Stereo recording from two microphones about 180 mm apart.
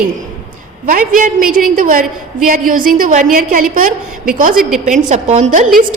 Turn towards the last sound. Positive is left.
turn(degrees=-40)  # may be behind; listen again after turning